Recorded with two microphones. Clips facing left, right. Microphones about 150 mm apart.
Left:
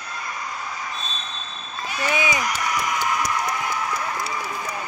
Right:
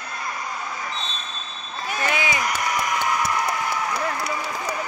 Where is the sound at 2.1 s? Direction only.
20° left (ahead or behind).